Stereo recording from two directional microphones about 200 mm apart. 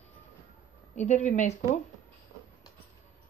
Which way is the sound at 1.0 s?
35° left (ahead or behind).